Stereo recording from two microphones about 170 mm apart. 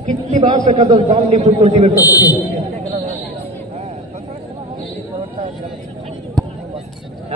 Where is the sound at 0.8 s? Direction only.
40° right (ahead or behind).